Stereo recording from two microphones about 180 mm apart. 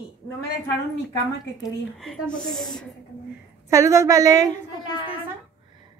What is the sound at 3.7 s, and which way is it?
Speech, 15° right (ahead or behind).